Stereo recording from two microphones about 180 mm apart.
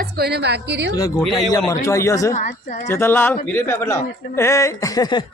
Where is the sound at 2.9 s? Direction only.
15° left (ahead or behind).